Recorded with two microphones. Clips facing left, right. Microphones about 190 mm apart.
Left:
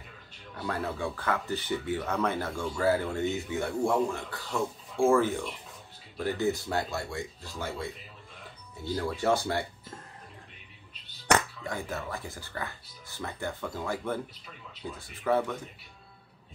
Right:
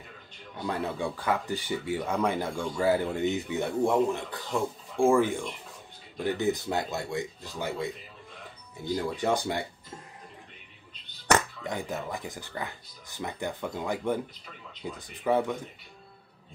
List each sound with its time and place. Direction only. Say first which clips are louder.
0.6 s speech: right 2 dB; 15° right (ahead or behind)
8.8 s speech: even; 15° right (ahead or behind)
11.6 s speech: right 2 dB; 15° right (ahead or behind)